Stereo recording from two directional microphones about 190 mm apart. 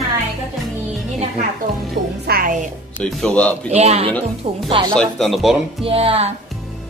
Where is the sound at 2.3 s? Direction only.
50° right (ahead or behind).